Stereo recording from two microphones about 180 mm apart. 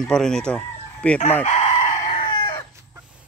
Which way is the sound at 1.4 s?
35° left (ahead or behind).